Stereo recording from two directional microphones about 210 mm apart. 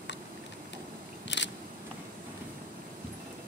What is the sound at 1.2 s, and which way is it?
Scissors, 60° left (ahead or behind).